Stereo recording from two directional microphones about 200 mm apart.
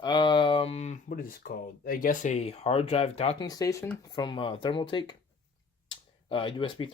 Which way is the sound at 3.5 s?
15° left (ahead or behind).